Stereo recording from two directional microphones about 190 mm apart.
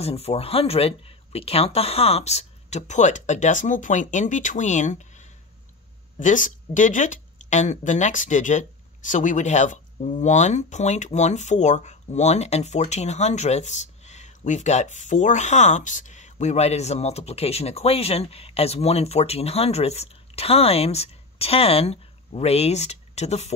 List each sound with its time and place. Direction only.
0.0 s speech: 30° left (ahead or behind)
6.1 s speech: 45° left (ahead or behind)